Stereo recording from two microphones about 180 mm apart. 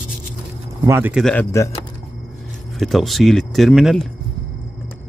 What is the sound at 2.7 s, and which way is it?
Speech, centre (ahead or behind).